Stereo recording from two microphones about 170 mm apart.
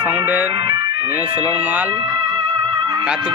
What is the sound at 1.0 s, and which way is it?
Speech, 10° right (ahead or behind).